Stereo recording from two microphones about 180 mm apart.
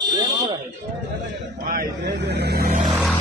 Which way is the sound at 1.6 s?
65° right (ahead or behind).